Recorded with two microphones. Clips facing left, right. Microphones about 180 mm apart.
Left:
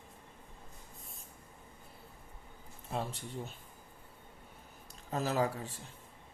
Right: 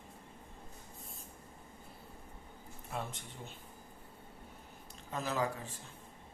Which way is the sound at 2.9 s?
30° left (ahead or behind).